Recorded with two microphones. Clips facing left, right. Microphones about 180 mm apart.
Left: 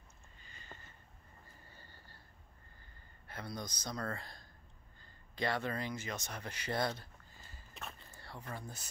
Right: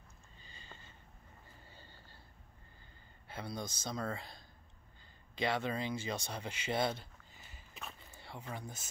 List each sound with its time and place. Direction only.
0.4 s a sound: 25° right (ahead or behind)
3.3 s speech: 25° right (ahead or behind)
3.9 s speech: 10° right (ahead or behind)
5.4 s speech: 20° right (ahead or behind)
8.1 s a sound: 20° right (ahead or behind)
8.4 s speech: 15° right (ahead or behind)